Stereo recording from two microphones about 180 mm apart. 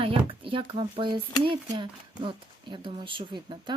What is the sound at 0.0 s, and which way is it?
Speech, 30° right (ahead or behind).